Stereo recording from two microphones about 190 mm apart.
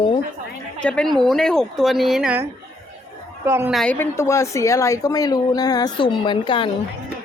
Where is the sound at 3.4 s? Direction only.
10° right (ahead or behind).